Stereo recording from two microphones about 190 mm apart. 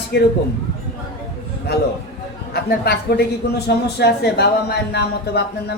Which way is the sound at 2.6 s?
55° left (ahead or behind).